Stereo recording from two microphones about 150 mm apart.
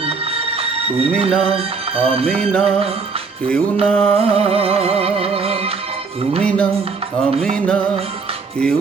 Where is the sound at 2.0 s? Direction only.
40° right (ahead or behind).